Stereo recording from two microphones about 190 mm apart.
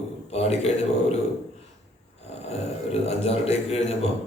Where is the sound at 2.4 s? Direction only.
35° left (ahead or behind).